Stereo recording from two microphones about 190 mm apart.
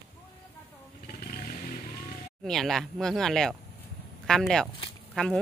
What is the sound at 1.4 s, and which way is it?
Motorcycle, 45° left (ahead or behind).